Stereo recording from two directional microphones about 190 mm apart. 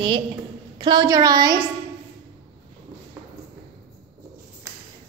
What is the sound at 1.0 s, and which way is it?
Child singing, 20° right (ahead or behind).